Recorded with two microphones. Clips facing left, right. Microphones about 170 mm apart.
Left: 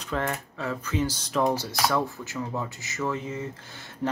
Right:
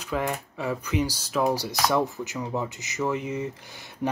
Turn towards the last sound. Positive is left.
turn(degrees=-15)  # may be behind; listen again after turning